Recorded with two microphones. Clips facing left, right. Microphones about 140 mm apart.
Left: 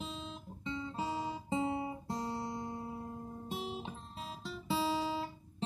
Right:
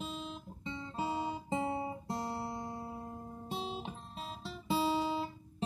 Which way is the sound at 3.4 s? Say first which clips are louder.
Right 2 dB; 20° right (ahead or behind).